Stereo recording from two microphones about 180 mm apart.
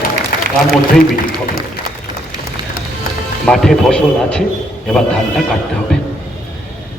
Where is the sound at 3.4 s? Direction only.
5° left (ahead or behind).